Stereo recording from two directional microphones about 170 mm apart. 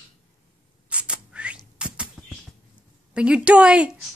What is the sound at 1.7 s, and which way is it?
Bird, 5° right (ahead or behind).